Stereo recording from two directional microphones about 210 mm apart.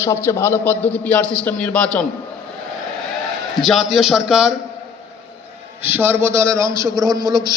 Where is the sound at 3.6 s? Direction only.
Centre (ahead or behind).